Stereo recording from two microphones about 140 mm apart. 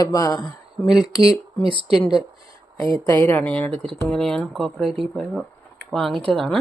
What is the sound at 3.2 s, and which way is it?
A woman's voice, 10° left (ahead or behind).